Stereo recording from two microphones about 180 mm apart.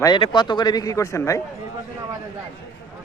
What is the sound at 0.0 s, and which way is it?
Speech, 25° left (ahead or behind).